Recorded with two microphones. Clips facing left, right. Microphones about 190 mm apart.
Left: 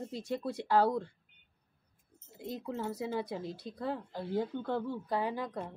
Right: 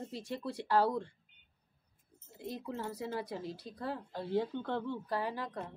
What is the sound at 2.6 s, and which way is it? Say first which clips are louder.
Speech: left 4 dB; 10° left (ahead or behind).